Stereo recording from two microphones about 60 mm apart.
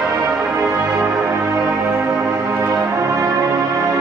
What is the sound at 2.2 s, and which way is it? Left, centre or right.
Music, right.